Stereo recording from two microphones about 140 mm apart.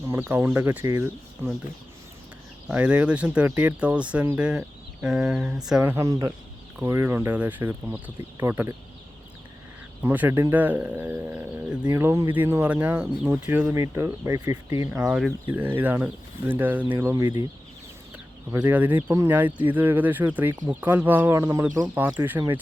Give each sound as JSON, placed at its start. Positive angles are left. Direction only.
{"t": 0.0, "sound": "speech", "side_deg": -15}
{"t": 2.6, "sound": "speech", "side_deg": -10}
{"t": 5.8, "sound": "speech", "side_deg": -20}
{"t": 10.0, "sound": "speech", "side_deg": -15}
{"t": 13.7, "sound": "speech", "side_deg": -20}
{"t": 14.8, "sound": "speech", "side_deg": -5}
{"t": 18.7, "sound": "speech", "side_deg": -10}
{"t": 19.0, "sound": "speech", "side_deg": -20}
{"t": 19.3, "sound": "speech", "side_deg": -10}